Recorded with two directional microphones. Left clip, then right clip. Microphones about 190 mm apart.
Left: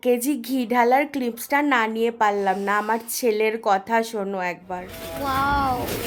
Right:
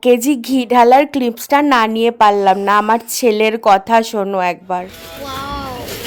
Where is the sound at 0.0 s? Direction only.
35° right (ahead or behind).